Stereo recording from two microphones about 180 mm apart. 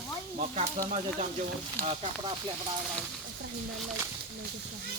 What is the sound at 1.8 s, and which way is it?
Speech, 35° right (ahead or behind).